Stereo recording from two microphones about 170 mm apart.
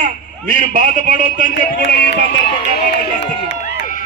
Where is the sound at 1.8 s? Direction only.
80° left.